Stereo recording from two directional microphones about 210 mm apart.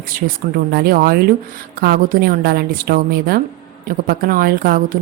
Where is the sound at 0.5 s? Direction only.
45° right (ahead or behind).